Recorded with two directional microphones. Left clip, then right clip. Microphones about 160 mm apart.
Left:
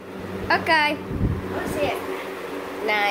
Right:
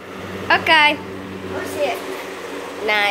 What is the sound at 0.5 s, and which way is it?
Speech, centre (ahead or behind).